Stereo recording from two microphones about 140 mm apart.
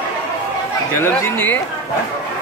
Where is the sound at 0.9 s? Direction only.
15° left (ahead or behind).